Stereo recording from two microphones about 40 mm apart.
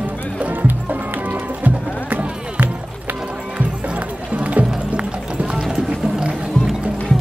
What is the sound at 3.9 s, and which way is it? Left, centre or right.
Run, right.